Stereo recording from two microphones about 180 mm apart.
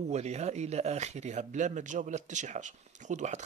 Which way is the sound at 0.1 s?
40° right (ahead or behind).